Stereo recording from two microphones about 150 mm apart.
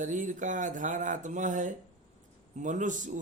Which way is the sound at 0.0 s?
60° right (ahead or behind).